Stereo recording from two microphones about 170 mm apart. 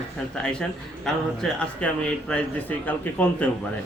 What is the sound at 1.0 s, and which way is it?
Speech, 5° left (ahead or behind).